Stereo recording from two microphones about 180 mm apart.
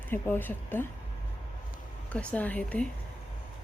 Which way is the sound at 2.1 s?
10° left (ahead or behind).